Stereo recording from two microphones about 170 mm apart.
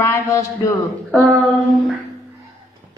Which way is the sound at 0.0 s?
15° left (ahead or behind).